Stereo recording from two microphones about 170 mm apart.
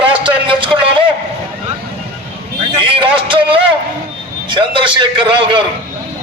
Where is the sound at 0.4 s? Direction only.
30° right (ahead or behind).